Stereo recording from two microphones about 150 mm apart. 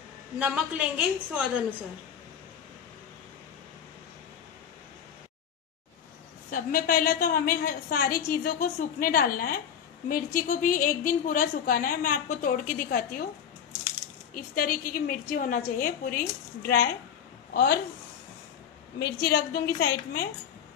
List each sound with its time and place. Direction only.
0.4 s a woman's voice: 10° right (ahead or behind)
6.5 s a woman's voice: 70° left (ahead or behind)
14.3 s a woman's voice: 70° left (ahead or behind); by 16.9 s 90° left
18.9 s a woman's voice: 90° left